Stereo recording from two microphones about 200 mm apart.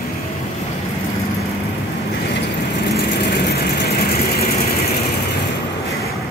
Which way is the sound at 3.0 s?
55° left (ahead or behind).